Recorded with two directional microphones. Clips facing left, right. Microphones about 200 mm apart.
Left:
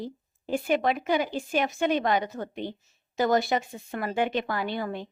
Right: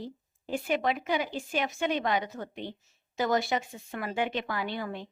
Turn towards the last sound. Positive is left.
turn(degrees=45)  # may be behind; listen again after turning